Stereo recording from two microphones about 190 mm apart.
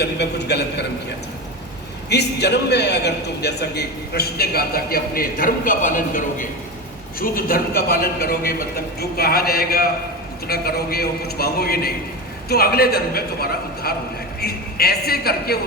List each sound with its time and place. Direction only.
0.0 s a man's voice: 60° left (ahead or behind)
2.0 s a man's voice: 60° left (ahead or behind)